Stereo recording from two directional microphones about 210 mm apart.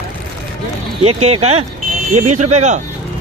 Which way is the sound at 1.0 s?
30° right (ahead or behind).